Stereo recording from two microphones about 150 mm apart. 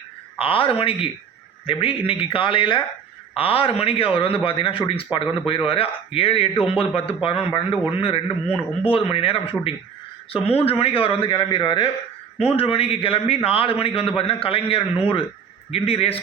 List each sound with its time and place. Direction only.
0.3 s a man's voice: 35° left (ahead or behind)